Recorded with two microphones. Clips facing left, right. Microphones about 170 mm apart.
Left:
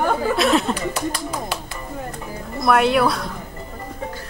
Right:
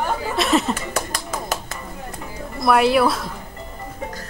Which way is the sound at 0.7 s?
45° right (ahead or behind).